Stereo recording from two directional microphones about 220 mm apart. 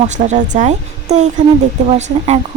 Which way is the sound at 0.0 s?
30° right (ahead or behind).